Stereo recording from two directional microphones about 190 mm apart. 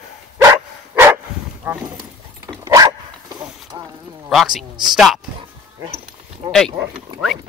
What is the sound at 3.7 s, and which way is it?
Clip-clop, 25° right (ahead or behind).